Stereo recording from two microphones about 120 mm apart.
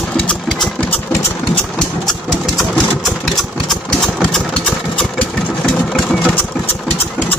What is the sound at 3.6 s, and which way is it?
Engine, 5° left (ahead or behind).